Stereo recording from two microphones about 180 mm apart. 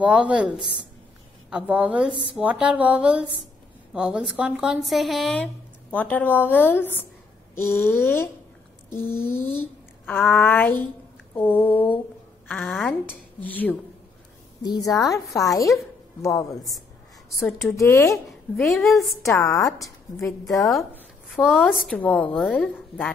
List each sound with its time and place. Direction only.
0.0 s a woman's voice: 5° right (ahead or behind)
1.5 s a woman's voice: 5° right (ahead or behind); by 12.0 s 10° left (ahead or behind)
13.4 s speech: 10° left (ahead or behind)
14.6 s a woman's voice: 20° left (ahead or behind)
17.4 s a woman's voice: 5° left (ahead or behind)
17.7 s speech: 15° left (ahead or behind)
18.7 s a woman's voice: centre (ahead or behind)
19.4 s a woman's voice: 20° left (ahead or behind)
20.4 s a woman's voice: centre (ahead or behind)